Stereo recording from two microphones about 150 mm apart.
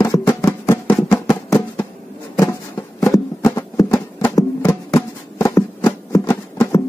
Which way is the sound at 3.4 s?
20° left (ahead or behind).